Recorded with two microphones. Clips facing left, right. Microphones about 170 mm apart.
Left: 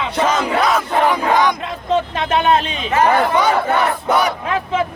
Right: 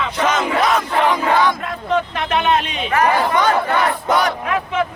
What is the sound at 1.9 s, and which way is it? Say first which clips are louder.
Speech: left 2 dB; 30° left (ahead or behind).